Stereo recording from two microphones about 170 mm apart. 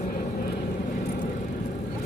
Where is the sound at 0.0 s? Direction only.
55° left (ahead or behind).